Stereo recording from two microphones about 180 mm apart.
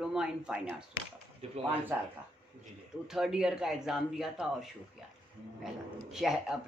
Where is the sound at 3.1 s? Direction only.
Centre (ahead or behind).